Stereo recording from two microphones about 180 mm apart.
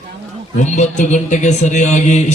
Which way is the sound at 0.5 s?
40° left (ahead or behind).